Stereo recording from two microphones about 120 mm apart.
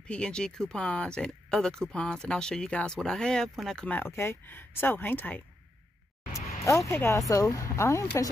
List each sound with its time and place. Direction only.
0.0 s speech: 5° left (ahead or behind)
6.6 s speech: 25° left (ahead or behind)